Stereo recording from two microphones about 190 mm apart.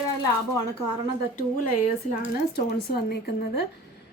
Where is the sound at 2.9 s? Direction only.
60° left (ahead or behind).